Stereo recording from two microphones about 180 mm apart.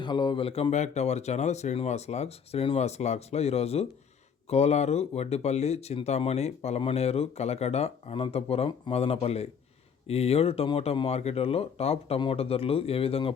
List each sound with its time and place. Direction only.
0.0 s speech: 25° left (ahead or behind)